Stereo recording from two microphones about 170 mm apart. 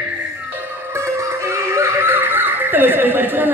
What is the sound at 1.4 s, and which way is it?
Snicker, 15° right (ahead or behind).